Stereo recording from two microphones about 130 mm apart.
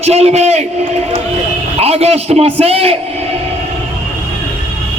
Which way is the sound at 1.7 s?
50° right (ahead or behind).